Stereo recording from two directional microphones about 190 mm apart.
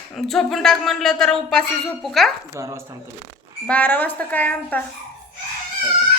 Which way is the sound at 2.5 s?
15° right (ahead or behind).